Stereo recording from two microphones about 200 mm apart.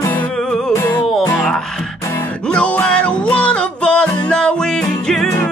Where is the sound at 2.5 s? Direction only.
5° left (ahead or behind).